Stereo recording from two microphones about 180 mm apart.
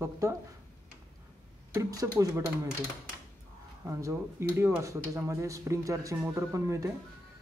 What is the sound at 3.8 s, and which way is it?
Speech, 15° right (ahead or behind).